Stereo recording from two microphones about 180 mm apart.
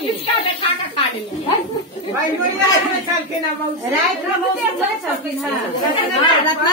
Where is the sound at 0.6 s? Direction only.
30° left (ahead or behind).